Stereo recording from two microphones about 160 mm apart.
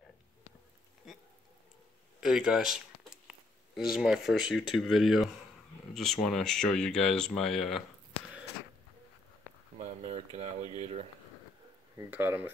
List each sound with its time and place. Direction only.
2.1 s a sound: 5° right (ahead or behind)
3.9 s speech: 5° right (ahead or behind)
9.8 s boiling: 40° right (ahead or behind)
12.1 s speech: 10° right (ahead or behind)